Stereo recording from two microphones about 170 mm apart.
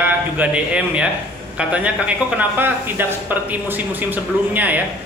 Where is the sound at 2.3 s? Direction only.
10° right (ahead or behind).